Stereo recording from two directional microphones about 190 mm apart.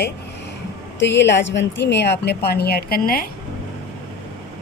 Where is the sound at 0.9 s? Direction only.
70° left (ahead or behind); by 3.3 s 50° left (ahead or behind).